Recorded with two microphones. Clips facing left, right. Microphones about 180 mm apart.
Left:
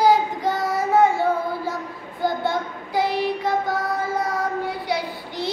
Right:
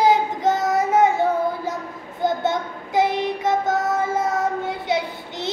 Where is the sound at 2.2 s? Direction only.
20° right (ahead or behind).